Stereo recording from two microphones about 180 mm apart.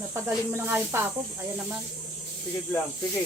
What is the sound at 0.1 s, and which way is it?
Speech, 15° right (ahead or behind).